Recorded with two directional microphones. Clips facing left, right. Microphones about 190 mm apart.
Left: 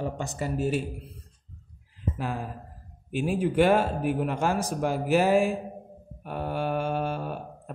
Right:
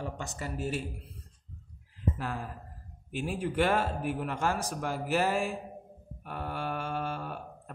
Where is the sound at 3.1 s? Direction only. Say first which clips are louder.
Left 7 dB; 15° left (ahead or behind).